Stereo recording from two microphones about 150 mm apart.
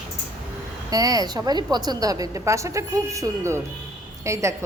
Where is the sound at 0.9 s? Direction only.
25° right (ahead or behind).